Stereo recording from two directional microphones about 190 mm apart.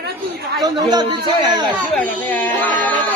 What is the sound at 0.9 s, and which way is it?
Speech, 25° right (ahead or behind).